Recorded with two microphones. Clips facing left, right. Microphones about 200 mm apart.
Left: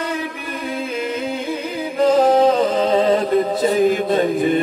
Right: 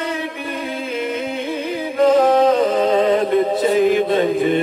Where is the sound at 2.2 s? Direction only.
30° left (ahead or behind).